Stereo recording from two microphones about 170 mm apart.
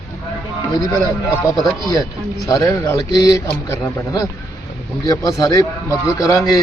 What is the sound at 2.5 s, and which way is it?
A man's voice, 20° left (ahead or behind).